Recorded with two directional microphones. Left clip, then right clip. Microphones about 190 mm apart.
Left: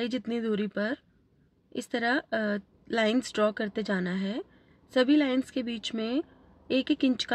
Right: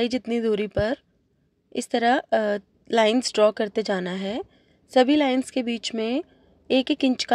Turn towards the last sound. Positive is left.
turn(degrees=-30)  # may be behind; listen again after turning